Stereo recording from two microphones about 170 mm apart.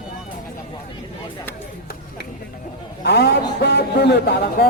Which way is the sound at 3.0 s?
70° left (ahead or behind).